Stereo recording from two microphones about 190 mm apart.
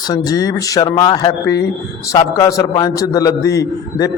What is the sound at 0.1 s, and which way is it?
A man's voice, 20° left (ahead or behind).